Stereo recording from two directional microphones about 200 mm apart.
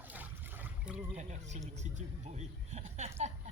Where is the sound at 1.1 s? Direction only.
35° right (ahead or behind).